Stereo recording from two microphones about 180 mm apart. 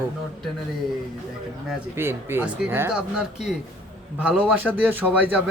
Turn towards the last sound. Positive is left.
turn(degrees=-10)  # may be behind; listen again after turning